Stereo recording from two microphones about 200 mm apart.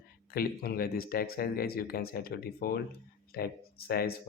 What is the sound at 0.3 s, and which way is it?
Speech, 50° left (ahead or behind).